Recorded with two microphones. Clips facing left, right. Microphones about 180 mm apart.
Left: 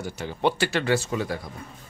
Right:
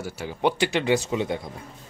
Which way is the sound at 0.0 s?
10° right (ahead or behind).